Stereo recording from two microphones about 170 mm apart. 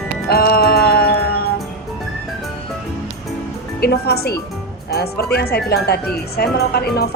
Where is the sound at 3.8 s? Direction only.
70° left (ahead or behind).